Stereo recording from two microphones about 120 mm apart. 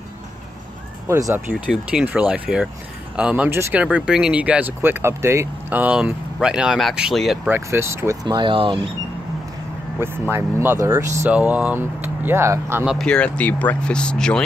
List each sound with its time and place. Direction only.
1.0 s speech: 25° right (ahead or behind)
1.5 s speech: 10° right (ahead or behind)
3.4 s speech: 20° right (ahead or behind)
3.8 s speech: 10° right (ahead or behind)
7.4 s speech: 20° right (ahead or behind); by 8.7 s 45° right (ahead or behind)
9.9 s speech: 20° right (ahead or behind)
11.2 s speech: 10° right (ahead or behind)
12.8 s speech: 5° left (ahead or behind)